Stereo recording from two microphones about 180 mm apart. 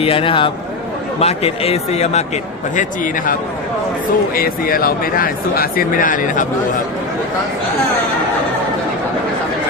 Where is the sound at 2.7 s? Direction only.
50° left (ahead or behind).